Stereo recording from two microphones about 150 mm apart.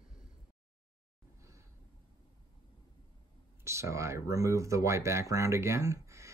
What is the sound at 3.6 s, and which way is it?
Speech, 20° right (ahead or behind).